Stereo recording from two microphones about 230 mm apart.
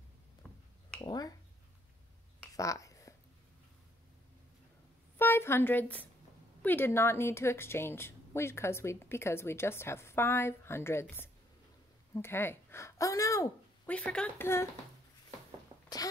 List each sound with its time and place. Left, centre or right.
1.0 s a woman's voice: centre
2.4 s a sound: centre
5.2 s a woman's voice: centre